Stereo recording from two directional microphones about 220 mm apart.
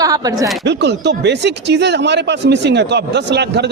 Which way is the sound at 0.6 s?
50° right (ahead or behind).